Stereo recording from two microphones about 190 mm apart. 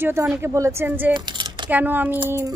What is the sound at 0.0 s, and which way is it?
Speech, 15° right (ahead or behind).